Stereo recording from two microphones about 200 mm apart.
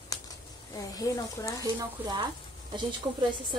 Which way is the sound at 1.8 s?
20° right (ahead or behind).